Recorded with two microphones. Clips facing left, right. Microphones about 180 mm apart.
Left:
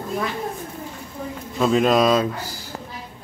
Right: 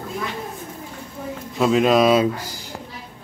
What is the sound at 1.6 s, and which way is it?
Speech, centre (ahead or behind).